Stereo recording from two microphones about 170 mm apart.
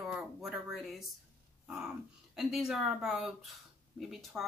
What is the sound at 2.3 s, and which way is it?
Speech, centre (ahead or behind).